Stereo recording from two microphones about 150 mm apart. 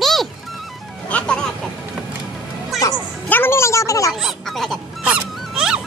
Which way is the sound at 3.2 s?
15° left (ahead or behind).